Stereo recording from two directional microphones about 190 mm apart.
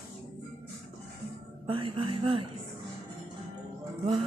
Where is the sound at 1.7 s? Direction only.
30° right (ahead or behind).